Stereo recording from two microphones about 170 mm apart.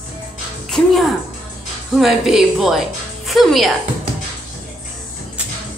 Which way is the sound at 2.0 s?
Centre (ahead or behind).